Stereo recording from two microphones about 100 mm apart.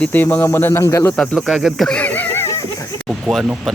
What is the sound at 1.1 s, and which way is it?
Speech, 5° left (ahead or behind).